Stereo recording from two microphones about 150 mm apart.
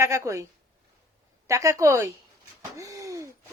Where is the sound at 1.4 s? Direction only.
20° right (ahead or behind).